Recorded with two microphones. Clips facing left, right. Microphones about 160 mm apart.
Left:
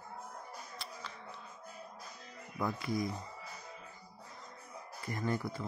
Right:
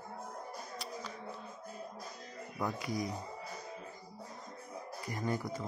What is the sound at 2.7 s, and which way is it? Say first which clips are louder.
Speech: left 1 dB; 40° right (ahead or behind).